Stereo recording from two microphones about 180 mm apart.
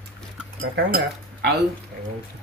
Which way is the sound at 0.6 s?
55° right (ahead or behind).